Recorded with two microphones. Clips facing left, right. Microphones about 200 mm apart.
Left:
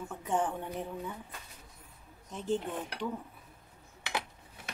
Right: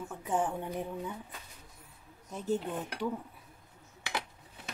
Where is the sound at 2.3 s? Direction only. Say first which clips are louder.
Even; 5° right (ahead or behind).